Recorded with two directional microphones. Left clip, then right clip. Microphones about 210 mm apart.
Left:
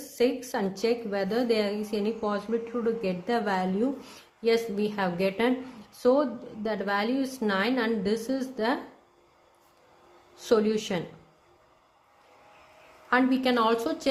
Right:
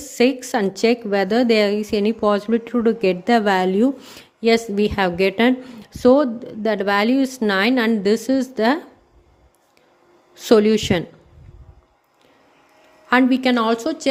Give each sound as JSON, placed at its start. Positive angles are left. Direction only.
{"t": 0.2, "sound": "speech", "side_deg": -40}
{"t": 10.5, "sound": "speech", "side_deg": -35}
{"t": 13.1, "sound": "speech", "side_deg": -35}